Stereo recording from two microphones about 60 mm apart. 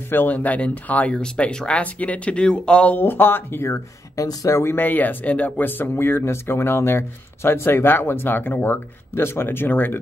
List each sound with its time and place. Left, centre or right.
0.1 s speech: left
3.0 s speech: left
4.2 s speech: left
4.5 s speech: left
4.7 s speech: left